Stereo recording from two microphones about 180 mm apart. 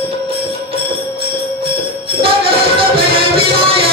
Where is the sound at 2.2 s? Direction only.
30° right (ahead or behind).